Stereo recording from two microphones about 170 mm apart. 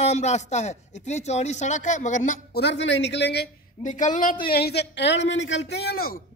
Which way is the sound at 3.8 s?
50° left (ahead or behind).